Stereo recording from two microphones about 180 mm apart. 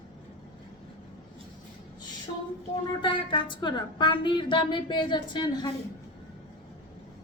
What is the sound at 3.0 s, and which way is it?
Speech, 25° left (ahead or behind).